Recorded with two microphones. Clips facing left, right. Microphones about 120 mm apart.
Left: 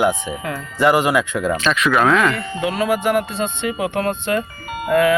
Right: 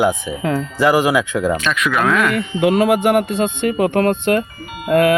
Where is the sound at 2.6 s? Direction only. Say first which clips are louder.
Right 7 dB; 60° right (ahead or behind).